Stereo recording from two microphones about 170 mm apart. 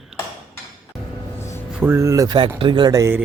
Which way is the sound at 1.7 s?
10° right (ahead or behind).